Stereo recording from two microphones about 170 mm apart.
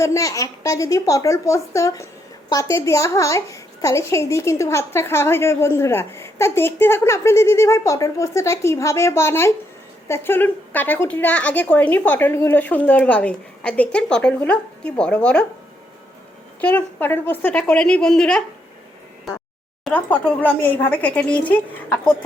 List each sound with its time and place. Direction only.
0.0 s a woman's voice: 20° left (ahead or behind)
16.6 s a woman's voice: 10° left (ahead or behind)
19.3 s a sound: centre (ahead or behind)
19.8 s a woman's voice: 10° left (ahead or behind)